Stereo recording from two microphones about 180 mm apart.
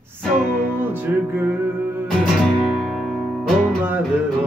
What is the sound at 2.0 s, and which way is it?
Music, centre (ahead or behind).